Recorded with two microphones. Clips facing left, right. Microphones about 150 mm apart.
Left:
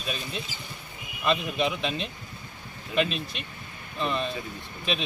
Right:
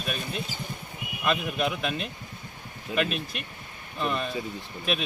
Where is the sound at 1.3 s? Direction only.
5° right (ahead or behind).